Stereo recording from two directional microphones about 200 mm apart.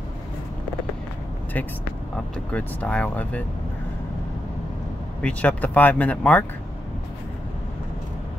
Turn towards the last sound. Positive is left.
turn(degrees=5)  # may be behind; listen again after turning